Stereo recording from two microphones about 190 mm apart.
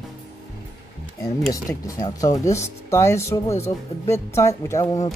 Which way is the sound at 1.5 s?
15° left (ahead or behind).